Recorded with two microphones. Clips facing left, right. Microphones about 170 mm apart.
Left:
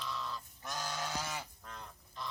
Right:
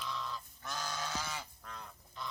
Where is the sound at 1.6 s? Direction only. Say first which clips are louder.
Even; centre (ahead or behind).